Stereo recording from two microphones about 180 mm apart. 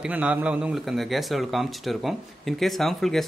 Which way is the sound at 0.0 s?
5° right (ahead or behind).